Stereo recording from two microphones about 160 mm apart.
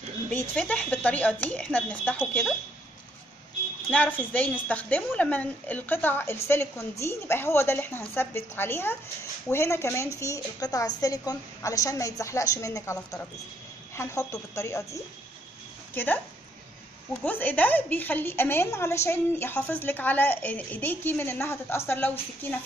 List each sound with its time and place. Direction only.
0.3 s a woman's voice: 10° left (ahead or behind)
3.9 s a woman's voice: 10° left (ahead or behind)